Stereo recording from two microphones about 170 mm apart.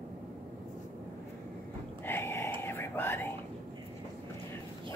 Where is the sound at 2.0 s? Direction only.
15° left (ahead or behind).